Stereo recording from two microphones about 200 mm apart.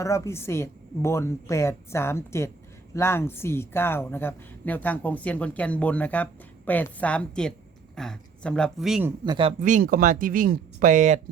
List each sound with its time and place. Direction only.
0.0 s speech: 15° left (ahead or behind); by 9.0 s centre (ahead or behind)
9.0 s speech: 20° right (ahead or behind)
9.6 s speech: 40° right (ahead or behind)